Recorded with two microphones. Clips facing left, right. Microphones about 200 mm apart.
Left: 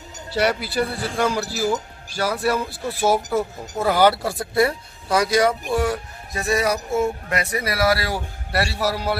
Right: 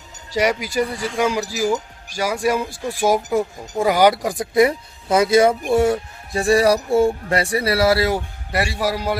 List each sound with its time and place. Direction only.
0.3 s speech: 10° right (ahead or behind)